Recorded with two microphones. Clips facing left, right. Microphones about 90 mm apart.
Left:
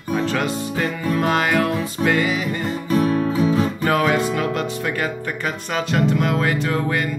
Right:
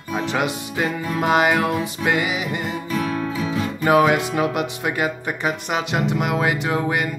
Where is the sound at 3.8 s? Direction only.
15° right (ahead or behind).